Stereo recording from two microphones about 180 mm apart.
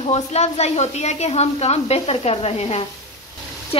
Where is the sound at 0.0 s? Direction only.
35° left (ahead or behind).